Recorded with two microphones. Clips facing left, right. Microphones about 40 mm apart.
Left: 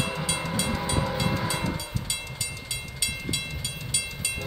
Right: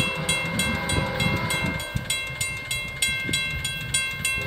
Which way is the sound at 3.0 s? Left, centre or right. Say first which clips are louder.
Right 6 dB; right.